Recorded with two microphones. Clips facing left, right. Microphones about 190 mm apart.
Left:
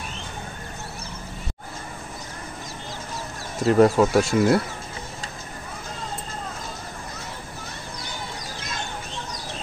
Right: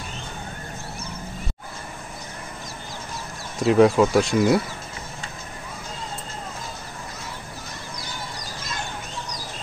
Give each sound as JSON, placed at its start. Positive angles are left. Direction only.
{"t": 3.6, "sound": "speech", "side_deg": 0}